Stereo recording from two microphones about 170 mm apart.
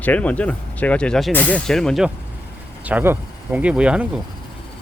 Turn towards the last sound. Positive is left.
turn(degrees=-5)  # may be behind; listen again after turning